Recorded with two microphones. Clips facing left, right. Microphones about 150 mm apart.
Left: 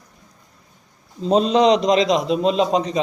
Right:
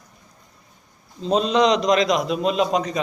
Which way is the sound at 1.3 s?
30° left (ahead or behind).